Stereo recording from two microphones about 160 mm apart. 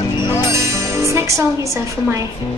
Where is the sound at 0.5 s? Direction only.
20° right (ahead or behind).